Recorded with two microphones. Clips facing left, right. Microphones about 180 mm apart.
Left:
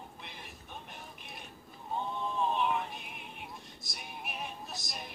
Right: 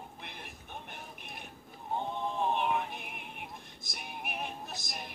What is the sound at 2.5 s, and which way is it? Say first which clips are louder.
Music: right 1 dB; 60° right (ahead or behind).